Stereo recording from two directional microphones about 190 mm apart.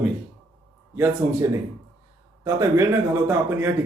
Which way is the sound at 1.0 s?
15° right (ahead or behind).